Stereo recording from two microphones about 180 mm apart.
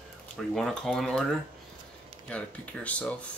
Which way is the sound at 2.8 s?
5° left (ahead or behind).